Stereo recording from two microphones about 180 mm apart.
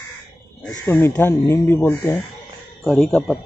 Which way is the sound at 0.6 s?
10° left (ahead or behind).